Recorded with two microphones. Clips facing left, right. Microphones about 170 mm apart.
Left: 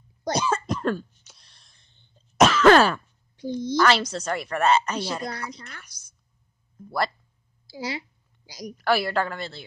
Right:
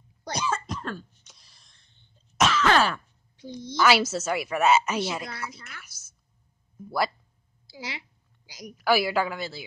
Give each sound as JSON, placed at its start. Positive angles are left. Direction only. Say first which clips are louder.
{"t": 0.2, "sound": "cough", "louder": "left 5 dB", "side_deg": 35}
{"t": 0.7, "sound": "cough", "louder": "left 9 dB", "side_deg": 50}
{"t": 1.2, "sound": "a sound", "louder": "left 1 dB", "side_deg": 0}
{"t": 2.4, "sound": "throat clearing", "louder": "left 6 dB", "side_deg": 50}
{"t": 3.7, "sound": "a woman's voice", "louder": "even", "side_deg": -5}
{"t": 5.6, "sound": "a woman's voice", "louder": "left 3 dB", "side_deg": 40}
{"t": 6.8, "sound": "a sound", "louder": "even", "side_deg": -5}
{"t": 7.6, "sound": "a sound", "louder": "left 7 dB", "side_deg": 40}
{"t": 8.5, "sound": "a woman's voice", "louder": "left 5 dB", "side_deg": 40}
{"t": 8.7, "sound": "a woman's voice", "louder": "even", "side_deg": -5}